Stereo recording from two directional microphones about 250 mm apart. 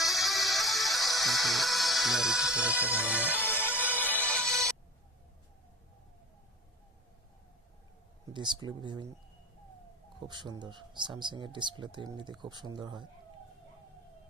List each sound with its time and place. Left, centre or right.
0.0 s music: centre
3.4 s music: centre
8.3 s speech: centre
10.2 s speech: centre